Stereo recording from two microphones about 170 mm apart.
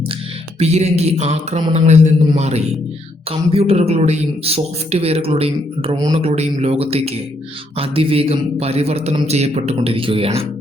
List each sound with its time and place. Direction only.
0.6 s a man's voice: 40° right (ahead or behind)